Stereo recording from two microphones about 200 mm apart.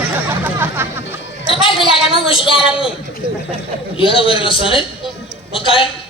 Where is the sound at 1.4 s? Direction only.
25° left (ahead or behind).